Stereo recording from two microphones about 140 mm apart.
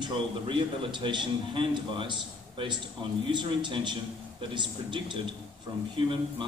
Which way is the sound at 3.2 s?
35° right (ahead or behind).